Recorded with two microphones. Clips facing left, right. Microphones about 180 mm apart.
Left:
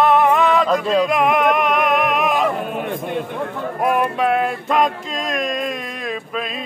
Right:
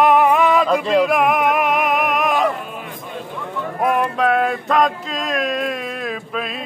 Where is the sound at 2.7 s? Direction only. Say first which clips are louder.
Left 8 dB; 60° left (ahead or behind).